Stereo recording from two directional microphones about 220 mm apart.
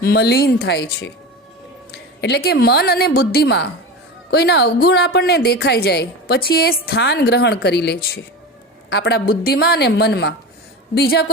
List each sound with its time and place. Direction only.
0.0 s a woman's voice: 45° left (ahead or behind)